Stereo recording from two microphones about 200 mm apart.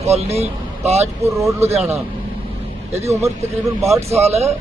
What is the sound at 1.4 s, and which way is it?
Speech, 15° right (ahead or behind).